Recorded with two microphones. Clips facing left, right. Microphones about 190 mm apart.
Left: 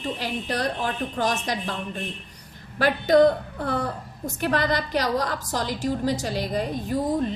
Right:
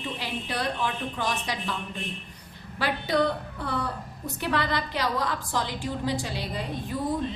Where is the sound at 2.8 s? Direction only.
45° left (ahead or behind).